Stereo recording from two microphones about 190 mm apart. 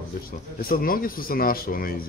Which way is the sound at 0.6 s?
50° left (ahead or behind).